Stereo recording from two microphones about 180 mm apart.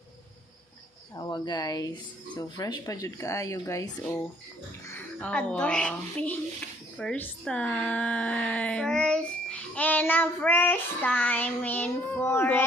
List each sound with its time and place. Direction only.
1.1 s speech: 25° left (ahead or behind)
4.9 s speech: 5° left (ahead or behind)